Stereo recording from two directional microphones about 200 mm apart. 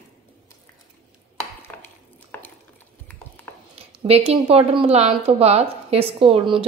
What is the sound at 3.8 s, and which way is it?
Speech, 25° right (ahead or behind).